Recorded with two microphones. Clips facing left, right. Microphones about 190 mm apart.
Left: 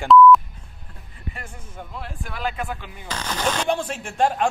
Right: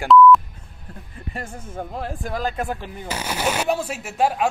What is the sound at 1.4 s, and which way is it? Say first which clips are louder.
Speech: right 7 dB; 40° right (ahead or behind).